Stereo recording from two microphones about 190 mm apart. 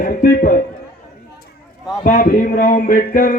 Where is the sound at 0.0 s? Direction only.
45° left (ahead or behind).